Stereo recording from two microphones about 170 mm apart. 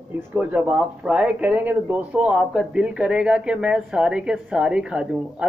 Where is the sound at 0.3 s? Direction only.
10° right (ahead or behind).